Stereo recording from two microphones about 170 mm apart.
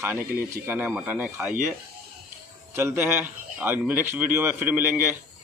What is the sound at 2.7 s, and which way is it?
Speech, 15° right (ahead or behind).